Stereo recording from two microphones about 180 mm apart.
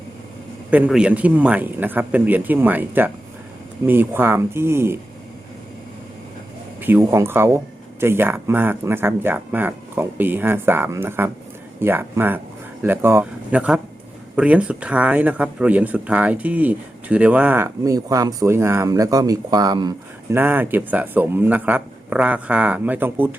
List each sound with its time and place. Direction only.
0.7 s speech: 5° right (ahead or behind)
6.8 s speech: 15° right (ahead or behind)
20.3 s speech: 10° right (ahead or behind)